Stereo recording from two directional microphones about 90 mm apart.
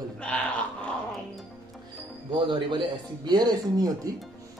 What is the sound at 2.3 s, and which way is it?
Speech, 60° right (ahead or behind).